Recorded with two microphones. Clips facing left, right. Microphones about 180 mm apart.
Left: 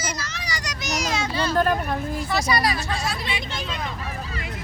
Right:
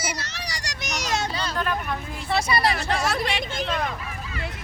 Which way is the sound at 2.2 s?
25° right (ahead or behind).